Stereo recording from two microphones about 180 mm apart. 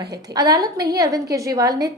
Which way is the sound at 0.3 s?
20° right (ahead or behind).